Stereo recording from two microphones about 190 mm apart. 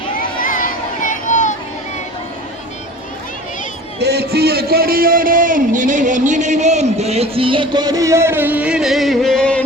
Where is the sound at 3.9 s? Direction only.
60° right (ahead or behind).